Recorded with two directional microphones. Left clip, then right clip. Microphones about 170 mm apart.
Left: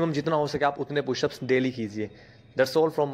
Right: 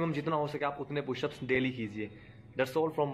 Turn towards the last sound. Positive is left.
turn(degrees=30)  # may be behind; listen again after turning